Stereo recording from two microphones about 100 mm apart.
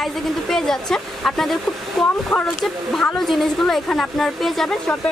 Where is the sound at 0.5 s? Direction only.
5° left (ahead or behind).